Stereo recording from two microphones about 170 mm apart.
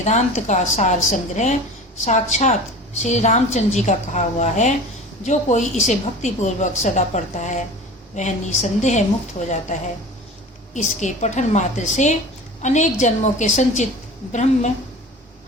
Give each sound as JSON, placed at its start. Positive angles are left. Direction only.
{"t": 0.0, "sound": "a woman's voice", "side_deg": 45}
{"t": 10.8, "sound": "a woman's voice", "side_deg": 45}